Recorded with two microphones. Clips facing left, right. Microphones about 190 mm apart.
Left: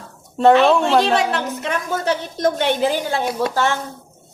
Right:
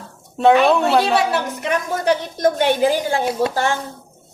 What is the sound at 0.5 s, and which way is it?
A woman's voice, 15° right (ahead or behind).